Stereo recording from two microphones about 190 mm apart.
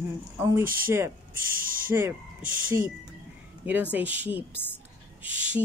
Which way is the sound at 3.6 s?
10° right (ahead or behind).